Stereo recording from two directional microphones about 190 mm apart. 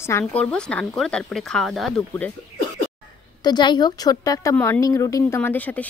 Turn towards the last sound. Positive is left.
turn(degrees=10)  # may be behind; listen again after turning